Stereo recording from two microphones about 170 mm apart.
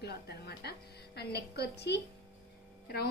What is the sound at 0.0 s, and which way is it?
A woman's voice, 75° left (ahead or behind).